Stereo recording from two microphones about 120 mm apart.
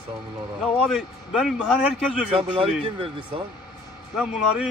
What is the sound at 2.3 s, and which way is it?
Speech, 50° right (ahead or behind).